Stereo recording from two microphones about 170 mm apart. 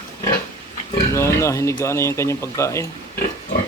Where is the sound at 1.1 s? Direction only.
15° left (ahead or behind).